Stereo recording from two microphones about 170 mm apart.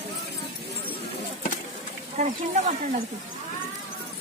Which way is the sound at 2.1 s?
45° right (ahead or behind).